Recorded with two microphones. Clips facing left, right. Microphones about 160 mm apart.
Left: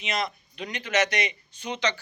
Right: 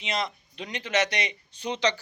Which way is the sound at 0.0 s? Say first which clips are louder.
Left 1 dB; 30° right (ahead or behind).